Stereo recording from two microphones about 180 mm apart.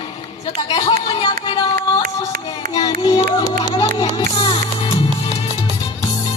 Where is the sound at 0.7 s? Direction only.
25° left (ahead or behind).